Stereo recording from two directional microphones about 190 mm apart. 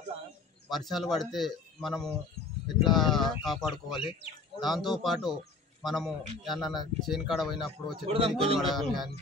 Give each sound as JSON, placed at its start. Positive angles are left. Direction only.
{"t": 0.7, "sound": "speech", "side_deg": 0}
{"t": 8.1, "sound": "speech", "side_deg": -30}
{"t": 8.5, "sound": "speech", "side_deg": 0}